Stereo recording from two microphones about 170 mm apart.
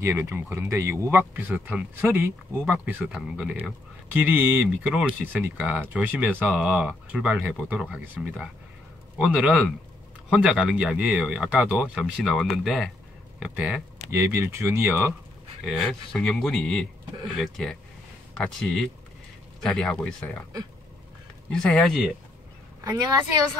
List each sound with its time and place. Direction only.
0.0 s speech: 15° right (ahead or behind)
15.6 s speech: 5° left (ahead or behind)
21.5 s speech: 5° left (ahead or behind)
22.8 s speech: 25° right (ahead or behind)